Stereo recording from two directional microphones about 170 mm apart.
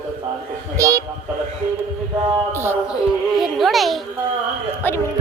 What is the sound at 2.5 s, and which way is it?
A woman's voice, 15° right (ahead or behind).